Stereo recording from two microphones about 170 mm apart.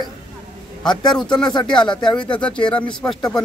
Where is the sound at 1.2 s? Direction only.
25° left (ahead or behind).